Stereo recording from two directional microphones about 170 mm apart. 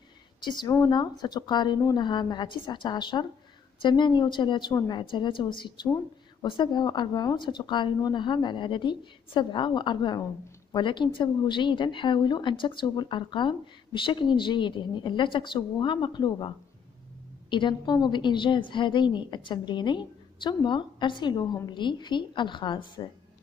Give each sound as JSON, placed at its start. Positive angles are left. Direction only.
{"t": 0.4, "sound": "a woman's voice", "side_deg": 25}